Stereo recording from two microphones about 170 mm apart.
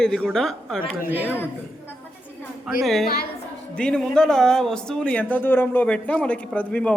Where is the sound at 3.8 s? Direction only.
5° left (ahead or behind).